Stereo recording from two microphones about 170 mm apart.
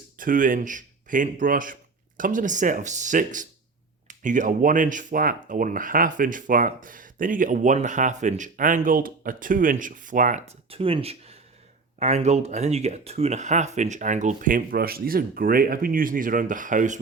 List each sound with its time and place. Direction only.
0.2 s speech: 55° right (ahead or behind)
10.7 s speech: 35° right (ahead or behind)